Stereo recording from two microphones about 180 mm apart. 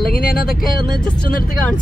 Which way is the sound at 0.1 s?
50° left (ahead or behind).